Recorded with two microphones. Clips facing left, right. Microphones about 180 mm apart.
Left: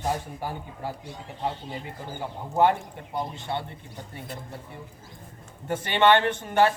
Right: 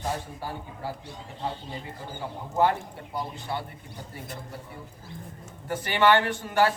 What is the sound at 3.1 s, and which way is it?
Speech, 25° left (ahead or behind).